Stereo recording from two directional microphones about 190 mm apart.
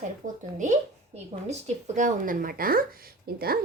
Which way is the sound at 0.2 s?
40° right (ahead or behind).